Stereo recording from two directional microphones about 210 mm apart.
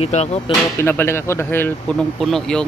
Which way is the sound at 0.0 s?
30° left (ahead or behind).